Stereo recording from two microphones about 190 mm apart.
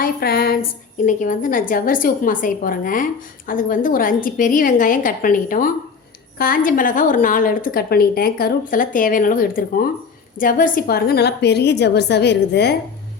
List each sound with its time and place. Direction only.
0.0 s a woman's voice: 55° left (ahead or behind)
1.0 s a woman's voice: 45° left (ahead or behind); by 12.7 s 60° left (ahead or behind)